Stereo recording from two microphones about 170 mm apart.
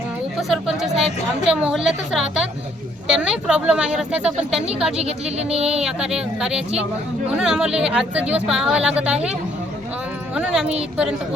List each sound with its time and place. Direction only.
0.3 s speech: centre (ahead or behind)
5.4 s speech: 35° right (ahead or behind)
5.8 s speech: 5° right (ahead or behind)
10.3 s speech: 5° right (ahead or behind)